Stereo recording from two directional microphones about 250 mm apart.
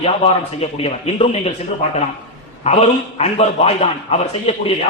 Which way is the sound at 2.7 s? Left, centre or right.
Left.